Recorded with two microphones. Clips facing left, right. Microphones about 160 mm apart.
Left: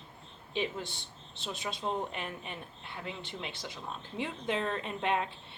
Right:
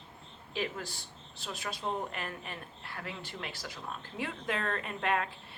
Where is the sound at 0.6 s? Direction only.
25° left (ahead or behind).